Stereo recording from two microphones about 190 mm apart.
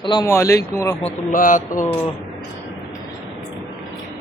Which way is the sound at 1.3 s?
45° left (ahead or behind).